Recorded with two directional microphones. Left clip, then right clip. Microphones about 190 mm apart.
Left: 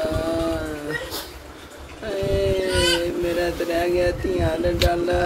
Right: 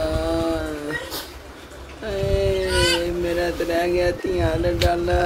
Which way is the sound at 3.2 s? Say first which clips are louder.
Even; 5° right (ahead or behind).